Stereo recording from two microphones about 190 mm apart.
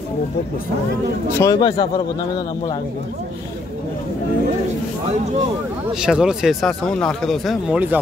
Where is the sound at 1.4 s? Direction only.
20° left (ahead or behind).